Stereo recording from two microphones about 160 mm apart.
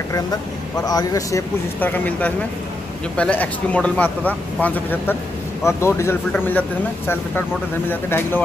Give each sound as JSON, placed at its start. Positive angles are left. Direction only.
{"t": 0.7, "sound": "a man's voice", "side_deg": 25}
{"t": 1.8, "sound": "speech", "side_deg": 10}
{"t": 7.9, "sound": "speech", "side_deg": 10}